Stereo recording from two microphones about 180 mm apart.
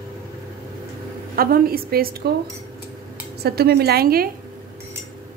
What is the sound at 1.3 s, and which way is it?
A woman's voice, 55° right (ahead or behind).